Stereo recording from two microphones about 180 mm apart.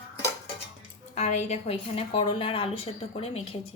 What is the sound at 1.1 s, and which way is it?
A woman's voice, 40° left (ahead or behind).